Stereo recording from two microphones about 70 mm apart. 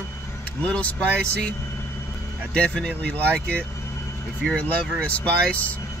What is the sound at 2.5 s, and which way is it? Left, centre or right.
Music, centre.